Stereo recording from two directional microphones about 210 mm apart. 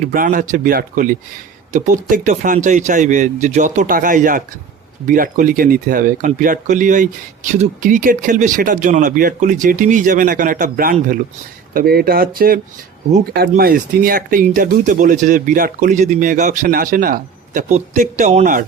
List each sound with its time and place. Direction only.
0.0 s speech: 40° right (ahead or behind)